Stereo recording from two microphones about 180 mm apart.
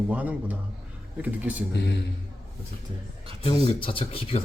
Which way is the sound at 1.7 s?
70° left (ahead or behind).